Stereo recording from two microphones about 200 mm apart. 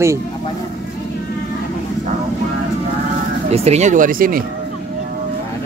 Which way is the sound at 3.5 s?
30° right (ahead or behind).